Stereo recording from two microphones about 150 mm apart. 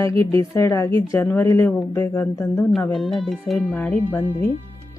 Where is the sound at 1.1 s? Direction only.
15° left (ahead or behind).